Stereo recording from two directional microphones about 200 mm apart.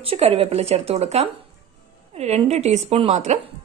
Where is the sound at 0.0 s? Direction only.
30° right (ahead or behind).